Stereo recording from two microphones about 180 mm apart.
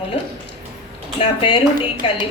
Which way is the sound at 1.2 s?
25° left (ahead or behind).